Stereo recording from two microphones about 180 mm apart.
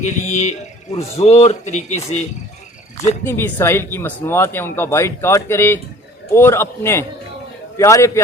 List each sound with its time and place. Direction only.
0.0 s speech: 40° left (ahead or behind)
3.2 s speech: 15° left (ahead or behind)